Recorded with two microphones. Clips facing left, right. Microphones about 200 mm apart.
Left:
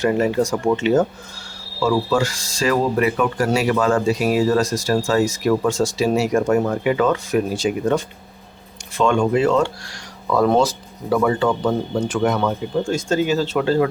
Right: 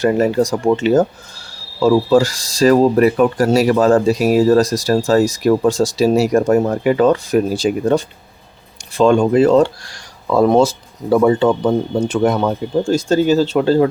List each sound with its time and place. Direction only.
0.0 s speech: 40° right (ahead or behind)
10.3 s speech: 20° right (ahead or behind)